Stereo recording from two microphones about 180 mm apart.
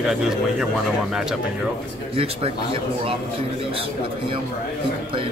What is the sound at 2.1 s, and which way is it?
Speech, 30° right (ahead or behind).